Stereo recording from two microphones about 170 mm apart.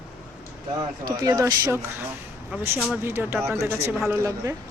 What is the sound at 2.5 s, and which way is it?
Speech, centre (ahead or behind).